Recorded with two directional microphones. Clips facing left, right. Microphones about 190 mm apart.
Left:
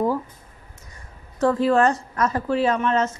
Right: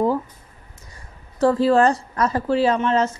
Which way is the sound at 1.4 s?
30° right (ahead or behind).